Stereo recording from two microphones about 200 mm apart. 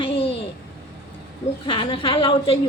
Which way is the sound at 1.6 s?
25° left (ahead or behind).